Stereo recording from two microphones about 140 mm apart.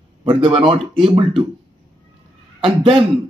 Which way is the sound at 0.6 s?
40° right (ahead or behind).